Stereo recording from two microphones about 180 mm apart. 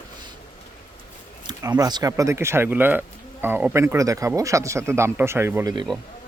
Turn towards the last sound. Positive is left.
turn(degrees=-15)  # may be behind; listen again after turning